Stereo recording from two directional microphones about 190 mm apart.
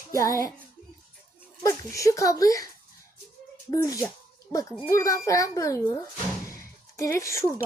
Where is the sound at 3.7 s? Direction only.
20° left (ahead or behind).